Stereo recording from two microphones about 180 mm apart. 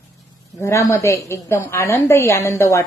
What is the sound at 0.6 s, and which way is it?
A woman's voice, 15° left (ahead or behind).